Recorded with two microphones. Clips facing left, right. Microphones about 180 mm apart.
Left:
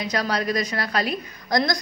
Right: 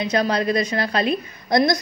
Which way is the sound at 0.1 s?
25° right (ahead or behind).